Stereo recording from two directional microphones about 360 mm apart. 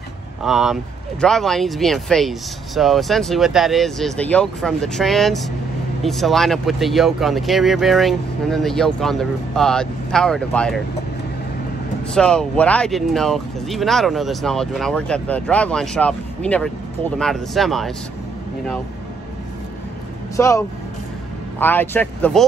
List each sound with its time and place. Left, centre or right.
0.4 s speech: centre
12.1 s speech: centre
20.3 s speech: centre